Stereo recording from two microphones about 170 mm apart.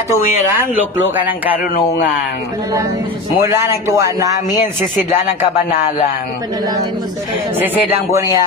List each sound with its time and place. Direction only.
0.6 s speech: 10° right (ahead or behind)
3.3 s speech: 15° right (ahead or behind)
7.6 s speech: 20° right (ahead or behind)